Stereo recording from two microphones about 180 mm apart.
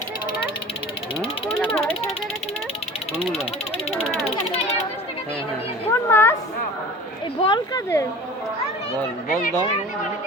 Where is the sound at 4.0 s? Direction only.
35° left (ahead or behind).